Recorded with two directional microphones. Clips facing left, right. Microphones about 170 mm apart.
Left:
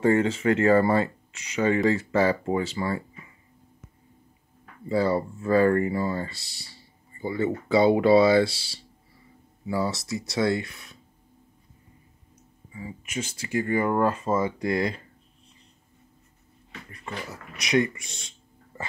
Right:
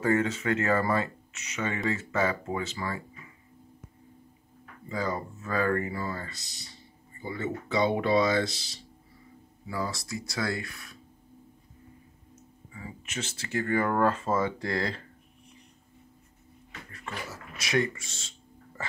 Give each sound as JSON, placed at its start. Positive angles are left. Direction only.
{"t": 0.0, "sound": "speech", "side_deg": 30}
{"t": 4.8, "sound": "speech", "side_deg": 35}
{"t": 9.7, "sound": "speech", "side_deg": 25}
{"t": 12.7, "sound": "speech", "side_deg": 10}
{"t": 16.9, "sound": "speech", "side_deg": 20}